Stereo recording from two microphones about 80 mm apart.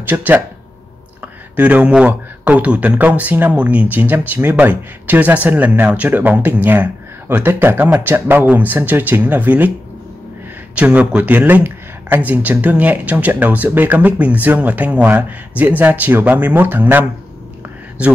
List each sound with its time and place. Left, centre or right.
0.0 s speech: right
1.6 s speech: centre
10.7 s speech: centre